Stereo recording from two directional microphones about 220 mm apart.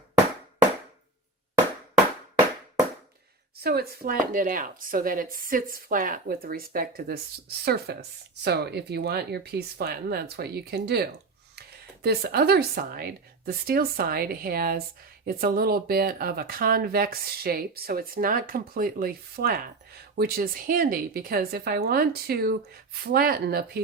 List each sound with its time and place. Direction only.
3.6 s speech: 45° right (ahead or behind)